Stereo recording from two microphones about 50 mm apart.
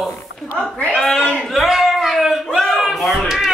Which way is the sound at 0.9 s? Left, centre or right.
Centre.